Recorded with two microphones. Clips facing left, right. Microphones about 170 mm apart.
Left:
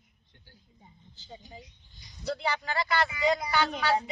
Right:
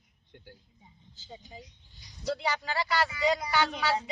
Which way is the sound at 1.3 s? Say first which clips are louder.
Even; 15° right (ahead or behind).